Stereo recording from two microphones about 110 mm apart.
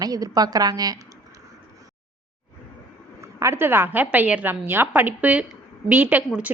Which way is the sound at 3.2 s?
25° right (ahead or behind).